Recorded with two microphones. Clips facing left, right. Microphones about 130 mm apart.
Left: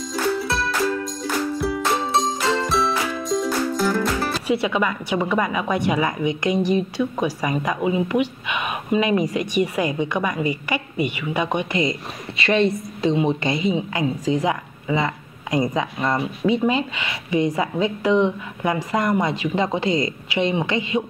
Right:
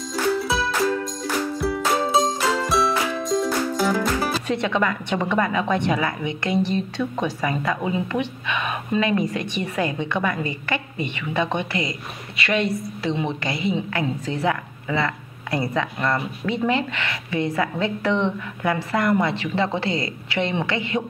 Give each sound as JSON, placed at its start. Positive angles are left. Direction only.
{"t": 0.1, "sound": "music", "side_deg": 0}
{"t": 4.5, "sound": "a woman's voice", "side_deg": 10}